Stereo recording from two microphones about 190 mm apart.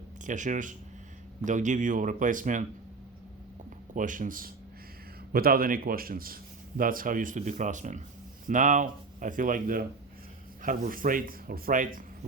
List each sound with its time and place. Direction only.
0.3 s speech: 40° right (ahead or behind)
3.9 s speech: 45° right (ahead or behind)